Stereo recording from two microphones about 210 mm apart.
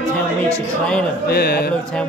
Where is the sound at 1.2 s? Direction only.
50° left (ahead or behind).